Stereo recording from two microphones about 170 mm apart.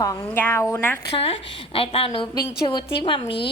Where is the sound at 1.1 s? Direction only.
35° left (ahead or behind).